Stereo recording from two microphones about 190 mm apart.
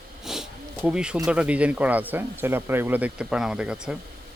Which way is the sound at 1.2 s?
5° right (ahead or behind).